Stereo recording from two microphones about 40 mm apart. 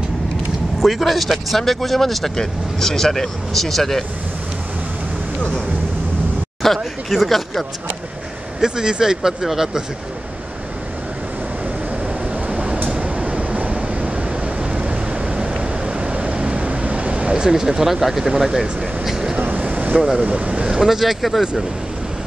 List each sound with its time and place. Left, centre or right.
0.7 s speech: centre
6.6 s speech: centre
8.5 s speech: centre
12.4 s a sound: right
14.6 s waves: right
17.3 s speech: centre
19.0 s vehicle: centre
19.3 s vehicle: right
20.2 s speech: right
20.8 s speech: centre